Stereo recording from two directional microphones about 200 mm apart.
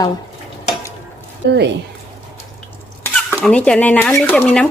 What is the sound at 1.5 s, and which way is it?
Speech, 60° right (ahead or behind).